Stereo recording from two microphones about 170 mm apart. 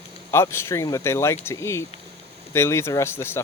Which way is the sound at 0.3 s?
15° left (ahead or behind).